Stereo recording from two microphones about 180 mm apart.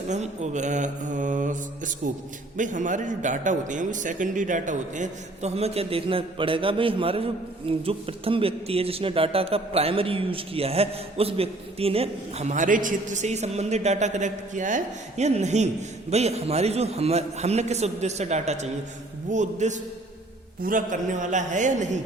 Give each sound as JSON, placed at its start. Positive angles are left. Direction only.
{"t": 0.1, "sound": "a man's voice", "side_deg": -40}
{"t": 2.6, "sound": "a man's voice", "side_deg": -45}